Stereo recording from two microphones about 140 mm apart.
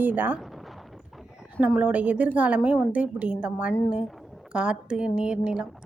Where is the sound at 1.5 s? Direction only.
10° right (ahead or behind).